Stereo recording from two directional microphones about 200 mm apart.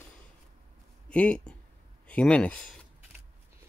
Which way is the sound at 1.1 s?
5° left (ahead or behind).